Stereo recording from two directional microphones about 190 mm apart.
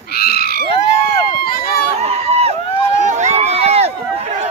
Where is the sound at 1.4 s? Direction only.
50° left (ahead or behind).